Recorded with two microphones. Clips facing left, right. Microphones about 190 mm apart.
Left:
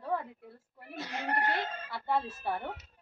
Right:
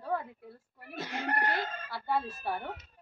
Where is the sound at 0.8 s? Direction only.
25° left (ahead or behind).